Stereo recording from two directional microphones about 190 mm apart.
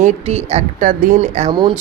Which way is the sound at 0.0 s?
35° right (ahead or behind).